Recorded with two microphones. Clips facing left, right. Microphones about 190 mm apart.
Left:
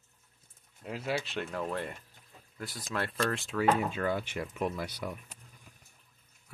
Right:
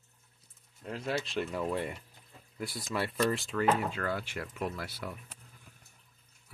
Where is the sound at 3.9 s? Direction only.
20° left (ahead or behind).